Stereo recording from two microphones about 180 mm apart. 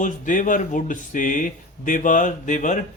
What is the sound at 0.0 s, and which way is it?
Speech, 45° left (ahead or behind).